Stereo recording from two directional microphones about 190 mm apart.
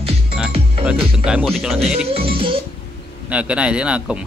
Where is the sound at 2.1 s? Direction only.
30° right (ahead or behind).